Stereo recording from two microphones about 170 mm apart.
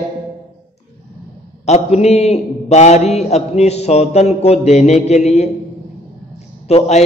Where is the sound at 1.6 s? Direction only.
40° left (ahead or behind).